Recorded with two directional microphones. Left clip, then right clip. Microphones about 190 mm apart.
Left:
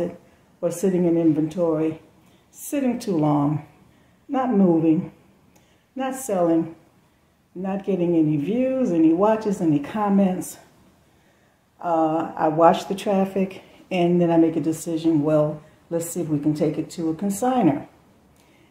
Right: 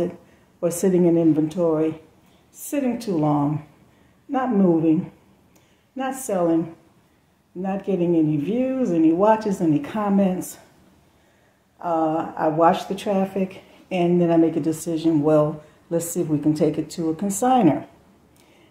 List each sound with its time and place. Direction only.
0.6 s a woman's voice: 20° right (ahead or behind); by 4.9 s 5° left (ahead or behind)
5.9 s speech: centre (ahead or behind)
7.6 s speech: centre (ahead or behind)
11.8 s a woman's voice: 5° left (ahead or behind); by 17.7 s 15° right (ahead or behind)